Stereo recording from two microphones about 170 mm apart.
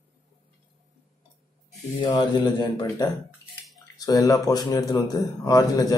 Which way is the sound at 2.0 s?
25° left (ahead or behind).